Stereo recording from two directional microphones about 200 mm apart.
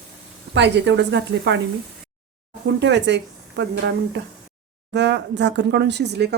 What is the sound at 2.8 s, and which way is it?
Speech, 60° right (ahead or behind).